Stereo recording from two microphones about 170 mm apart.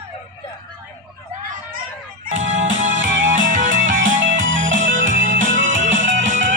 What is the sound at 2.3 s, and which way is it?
Music, 90° right.